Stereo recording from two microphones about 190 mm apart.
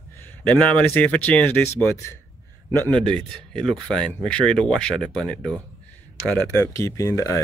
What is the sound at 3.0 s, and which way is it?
Speech, 5° left (ahead or behind).